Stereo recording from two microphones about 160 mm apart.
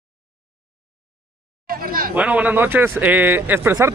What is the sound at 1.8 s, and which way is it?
Chatter, 65° right (ahead or behind).